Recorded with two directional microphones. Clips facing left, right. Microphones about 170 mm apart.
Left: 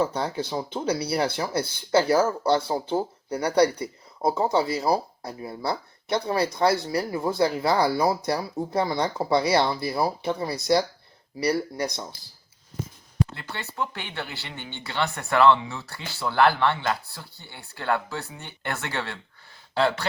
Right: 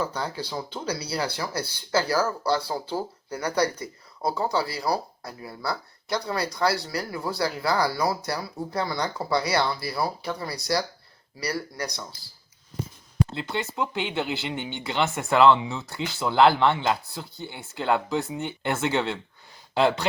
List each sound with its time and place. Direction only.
0.0 s speech: 25° left (ahead or behind)
13.3 s speech: 20° right (ahead or behind)